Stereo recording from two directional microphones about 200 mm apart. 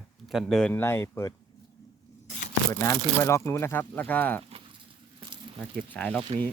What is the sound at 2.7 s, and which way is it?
Speech, 15° left (ahead or behind).